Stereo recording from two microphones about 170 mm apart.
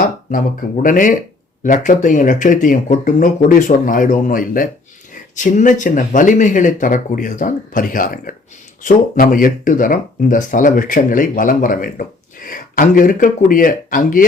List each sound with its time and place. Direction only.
0.3 s speech: 55° left (ahead or behind)